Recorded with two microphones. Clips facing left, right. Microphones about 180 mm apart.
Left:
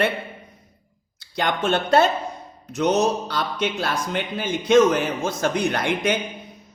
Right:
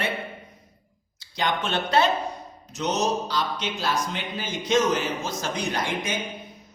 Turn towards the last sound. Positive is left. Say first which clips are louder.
# left 5 dB
turn(degrees=60)  # may be behind; listen again after turning